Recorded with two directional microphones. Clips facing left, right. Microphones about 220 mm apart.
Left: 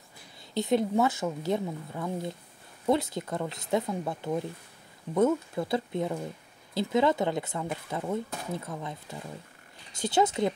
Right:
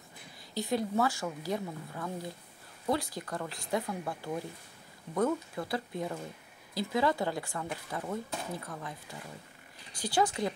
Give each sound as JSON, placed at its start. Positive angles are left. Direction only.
{"t": 0.6, "sound": "speech", "side_deg": 20}
{"t": 9.9, "sound": "speech", "side_deg": 20}